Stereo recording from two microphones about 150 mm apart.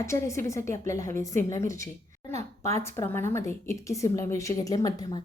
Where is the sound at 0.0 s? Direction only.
20° left (ahead or behind).